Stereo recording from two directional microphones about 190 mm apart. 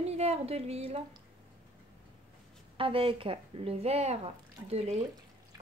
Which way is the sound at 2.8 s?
30° right (ahead or behind).